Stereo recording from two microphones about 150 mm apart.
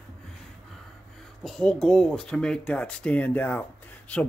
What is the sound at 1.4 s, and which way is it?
Speech, 5° left (ahead or behind).